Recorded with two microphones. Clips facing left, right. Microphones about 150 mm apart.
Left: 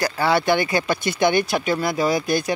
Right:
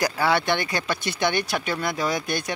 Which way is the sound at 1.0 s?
50° left (ahead or behind).